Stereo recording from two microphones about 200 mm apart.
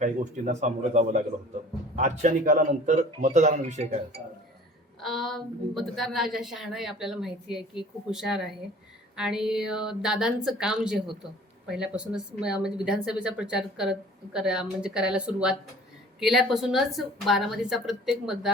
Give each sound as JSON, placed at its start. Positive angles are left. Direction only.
{"t": 0.0, "sound": "a man's voice", "side_deg": -35}
{"t": 4.9, "sound": "a woman's voice", "side_deg": 0}